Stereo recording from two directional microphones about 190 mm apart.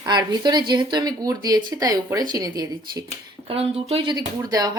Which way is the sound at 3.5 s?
30° right (ahead or behind).